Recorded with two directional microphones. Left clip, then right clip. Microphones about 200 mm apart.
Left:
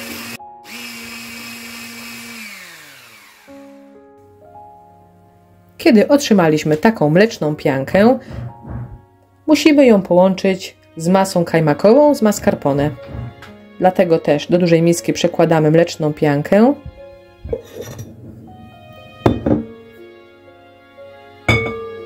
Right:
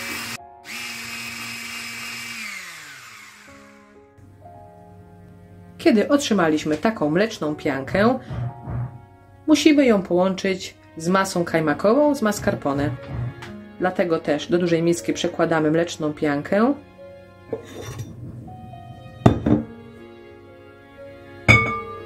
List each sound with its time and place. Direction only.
5.8 s speech: 30° left (ahead or behind)
9.5 s speech: 25° left (ahead or behind)